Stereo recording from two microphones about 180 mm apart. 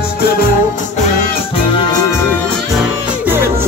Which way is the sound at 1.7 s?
25° left (ahead or behind).